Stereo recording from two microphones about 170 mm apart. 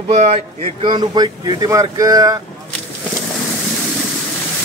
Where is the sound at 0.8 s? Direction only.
25° right (ahead or behind).